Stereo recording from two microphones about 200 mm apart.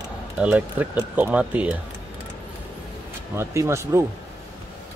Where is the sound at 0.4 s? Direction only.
5° right (ahead or behind).